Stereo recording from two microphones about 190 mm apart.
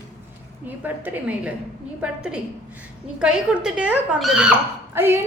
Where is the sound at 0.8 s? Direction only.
10° right (ahead or behind).